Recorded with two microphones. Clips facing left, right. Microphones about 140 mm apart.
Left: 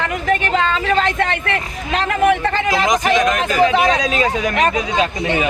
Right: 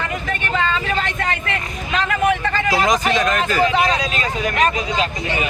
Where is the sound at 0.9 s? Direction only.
65° left (ahead or behind).